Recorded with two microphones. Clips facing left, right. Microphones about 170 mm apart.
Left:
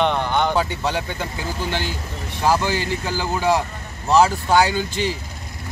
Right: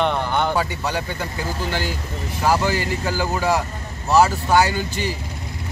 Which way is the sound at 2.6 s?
20° left (ahead or behind).